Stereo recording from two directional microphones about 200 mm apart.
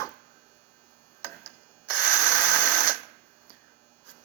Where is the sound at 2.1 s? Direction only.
15° left (ahead or behind).